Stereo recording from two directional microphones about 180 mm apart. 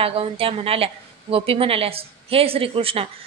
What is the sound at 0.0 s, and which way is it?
A woman's voice, 30° right (ahead or behind).